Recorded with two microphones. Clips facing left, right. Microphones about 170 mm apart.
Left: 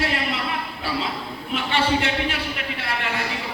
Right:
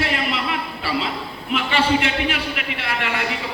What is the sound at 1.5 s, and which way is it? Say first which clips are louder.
A man's voice: right 3 dB; 90° right.